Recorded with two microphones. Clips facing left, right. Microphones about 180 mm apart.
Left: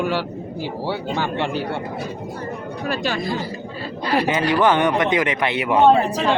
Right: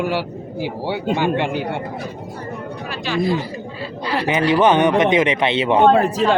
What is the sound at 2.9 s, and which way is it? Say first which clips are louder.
Speech: right 1 dB; 45° left (ahead or behind).